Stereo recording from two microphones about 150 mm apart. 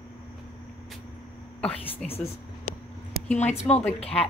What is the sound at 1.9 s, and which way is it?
Speech, 40° left (ahead or behind).